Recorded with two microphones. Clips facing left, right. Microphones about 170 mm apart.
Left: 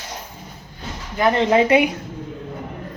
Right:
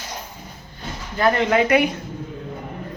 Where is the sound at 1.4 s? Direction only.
30° left (ahead or behind).